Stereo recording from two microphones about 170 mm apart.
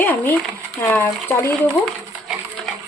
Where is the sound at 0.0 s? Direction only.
10° left (ahead or behind).